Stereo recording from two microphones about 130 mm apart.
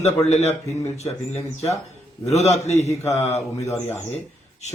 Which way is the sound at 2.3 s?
60° left (ahead or behind).